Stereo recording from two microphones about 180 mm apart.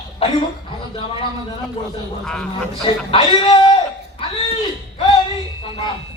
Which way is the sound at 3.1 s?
25° left (ahead or behind).